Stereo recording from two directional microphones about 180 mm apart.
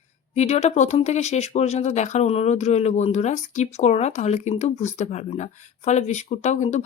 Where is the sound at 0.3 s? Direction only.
40° left (ahead or behind).